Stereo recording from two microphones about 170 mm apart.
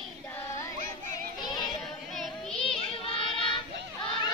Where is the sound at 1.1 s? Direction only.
25° left (ahead or behind).